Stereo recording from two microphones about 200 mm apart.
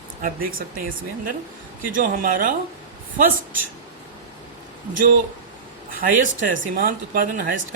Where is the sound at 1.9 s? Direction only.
45° right (ahead or behind).